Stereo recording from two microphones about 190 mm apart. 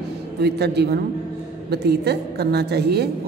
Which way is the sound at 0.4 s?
60° right (ahead or behind).